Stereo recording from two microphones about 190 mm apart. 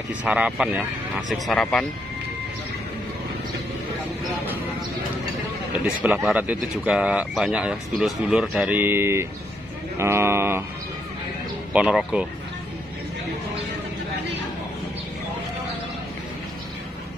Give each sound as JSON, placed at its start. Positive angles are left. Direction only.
{"t": 0.2, "sound": "speech", "side_deg": -5}
{"t": 6.0, "sound": "speech", "side_deg": -5}
{"t": 11.7, "sound": "speech", "side_deg": -5}